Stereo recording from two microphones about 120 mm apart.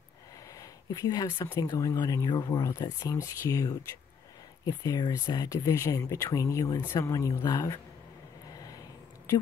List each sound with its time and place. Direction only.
0.6 s speech: 30° left (ahead or behind)
8.5 s vehicle: 30° left (ahead or behind)